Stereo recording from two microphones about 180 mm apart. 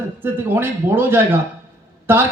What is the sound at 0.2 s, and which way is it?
A man's voice, 10° right (ahead or behind).